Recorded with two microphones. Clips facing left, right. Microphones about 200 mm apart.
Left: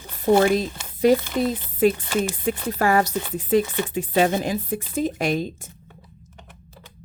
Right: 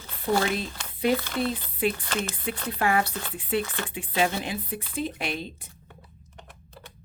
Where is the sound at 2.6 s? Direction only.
40° left (ahead or behind).